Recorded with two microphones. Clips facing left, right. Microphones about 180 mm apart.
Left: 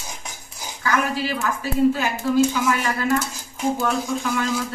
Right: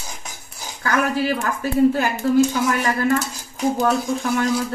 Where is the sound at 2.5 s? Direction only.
45° right (ahead or behind).